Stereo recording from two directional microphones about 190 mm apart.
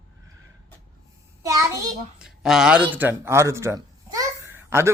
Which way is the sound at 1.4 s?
20° right (ahead or behind).